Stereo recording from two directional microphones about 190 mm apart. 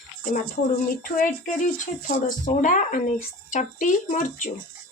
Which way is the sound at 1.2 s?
40° left (ahead or behind).